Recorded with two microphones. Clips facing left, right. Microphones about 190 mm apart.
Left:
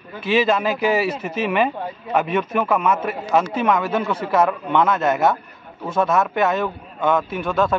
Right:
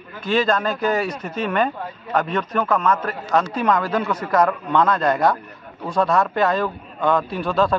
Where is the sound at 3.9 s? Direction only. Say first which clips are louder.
Even; 25° left (ahead or behind).